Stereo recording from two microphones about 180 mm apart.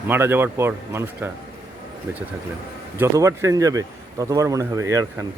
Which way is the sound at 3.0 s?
15° right (ahead or behind).